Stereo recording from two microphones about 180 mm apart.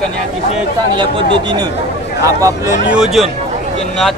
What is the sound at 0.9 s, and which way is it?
Speech, 25° right (ahead or behind).